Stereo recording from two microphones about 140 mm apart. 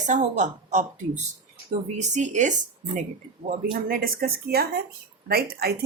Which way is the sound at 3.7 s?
90° right.